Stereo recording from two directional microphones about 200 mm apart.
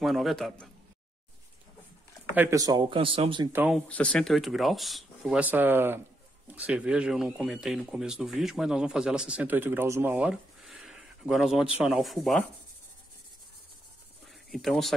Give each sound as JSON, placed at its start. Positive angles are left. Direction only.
{"t": 0.0, "sound": "speech", "side_deg": 0}
{"t": 2.3, "sound": "speech", "side_deg": -15}
{"t": 3.5, "sound": "speech", "side_deg": -5}
{"t": 3.9, "sound": "speech", "side_deg": 5}
{"t": 14.2, "sound": "a sound", "side_deg": 0}